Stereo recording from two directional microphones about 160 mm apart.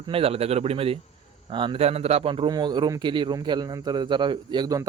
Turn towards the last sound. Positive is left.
turn(degrees=-25)  # may be behind; listen again after turning